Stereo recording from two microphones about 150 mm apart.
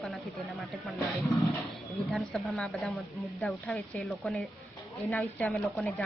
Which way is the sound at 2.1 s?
5° left (ahead or behind).